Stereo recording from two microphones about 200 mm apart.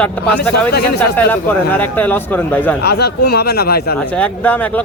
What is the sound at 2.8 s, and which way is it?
A man's voice, 55° left (ahead or behind).